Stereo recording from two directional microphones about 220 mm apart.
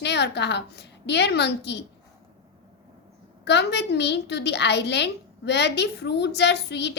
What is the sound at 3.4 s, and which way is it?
A woman's voice, 50° left (ahead or behind).